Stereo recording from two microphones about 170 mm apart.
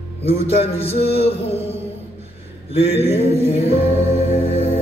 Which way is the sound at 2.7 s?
35° left (ahead or behind).